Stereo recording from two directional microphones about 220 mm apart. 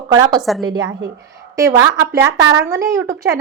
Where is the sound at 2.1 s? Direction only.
15° right (ahead or behind).